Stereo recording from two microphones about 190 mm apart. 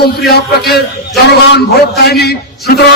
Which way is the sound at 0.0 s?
55° left (ahead or behind).